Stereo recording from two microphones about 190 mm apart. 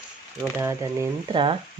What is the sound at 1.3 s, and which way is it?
Speech, 25° right (ahead or behind).